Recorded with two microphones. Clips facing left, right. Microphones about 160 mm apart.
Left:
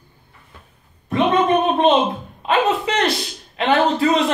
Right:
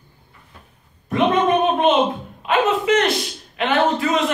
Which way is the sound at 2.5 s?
35° left (ahead or behind).